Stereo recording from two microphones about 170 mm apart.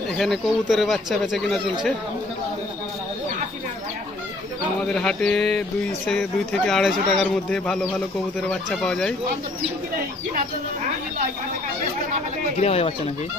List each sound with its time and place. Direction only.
0.2 s speech: centre (ahead or behind)
4.7 s speech: 5° left (ahead or behind)
12.5 s speech: 35° left (ahead or behind)